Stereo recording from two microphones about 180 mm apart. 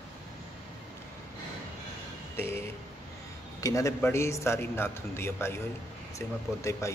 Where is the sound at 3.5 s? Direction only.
20° left (ahead or behind).